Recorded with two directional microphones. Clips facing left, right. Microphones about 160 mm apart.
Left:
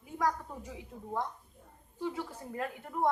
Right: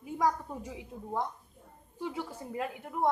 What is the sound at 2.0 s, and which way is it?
A woman's voice, 15° right (ahead or behind).